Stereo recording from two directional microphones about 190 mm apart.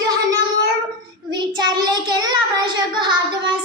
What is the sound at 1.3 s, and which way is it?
Child singing, 20° right (ahead or behind).